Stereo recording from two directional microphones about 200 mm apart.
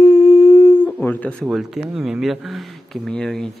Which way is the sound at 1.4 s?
Centre (ahead or behind).